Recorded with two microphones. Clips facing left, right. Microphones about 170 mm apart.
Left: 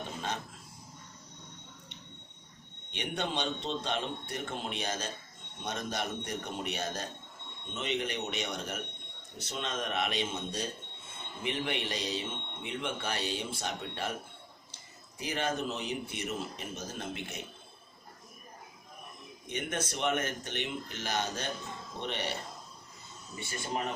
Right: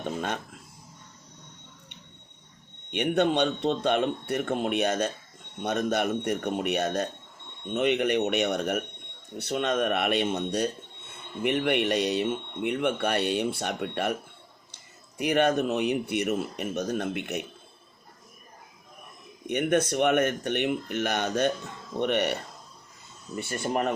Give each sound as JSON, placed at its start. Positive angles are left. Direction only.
{"t": 2.9, "sound": "speech", "side_deg": -60}
{"t": 15.2, "sound": "speech", "side_deg": -65}
{"t": 19.5, "sound": "speech", "side_deg": -65}